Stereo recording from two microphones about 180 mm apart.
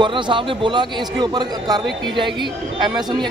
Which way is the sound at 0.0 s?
25° right (ahead or behind).